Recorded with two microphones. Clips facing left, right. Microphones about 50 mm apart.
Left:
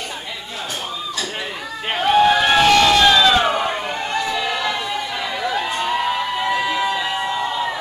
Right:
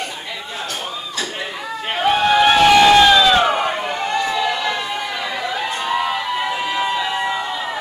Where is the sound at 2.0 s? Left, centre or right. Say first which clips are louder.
Even; centre.